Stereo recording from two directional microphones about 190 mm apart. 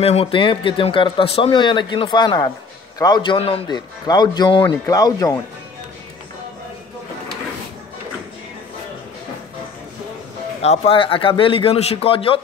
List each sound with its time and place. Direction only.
0.0 s speech: 30° left (ahead or behind)
10.6 s speech: 35° left (ahead or behind)